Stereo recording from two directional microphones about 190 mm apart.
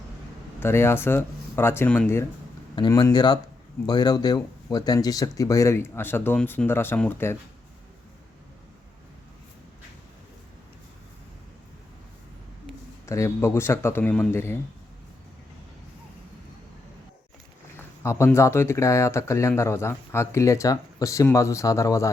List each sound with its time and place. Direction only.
0.6 s speech: 10° left (ahead or behind)
13.1 s speech: 15° left (ahead or behind)
18.0 s speech: 15° left (ahead or behind)